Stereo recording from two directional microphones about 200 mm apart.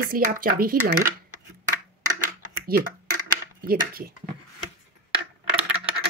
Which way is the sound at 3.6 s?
45° right (ahead or behind).